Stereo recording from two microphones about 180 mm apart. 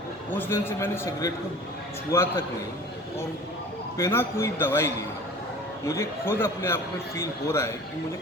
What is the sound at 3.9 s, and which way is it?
A man's voice, 15° left (ahead or behind).